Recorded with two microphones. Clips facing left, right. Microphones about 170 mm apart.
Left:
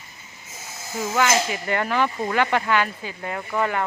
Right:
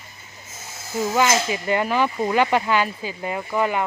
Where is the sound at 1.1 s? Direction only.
20° right (ahead or behind).